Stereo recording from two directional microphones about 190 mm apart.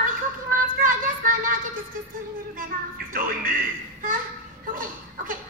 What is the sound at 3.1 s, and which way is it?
Music, 50° right (ahead or behind).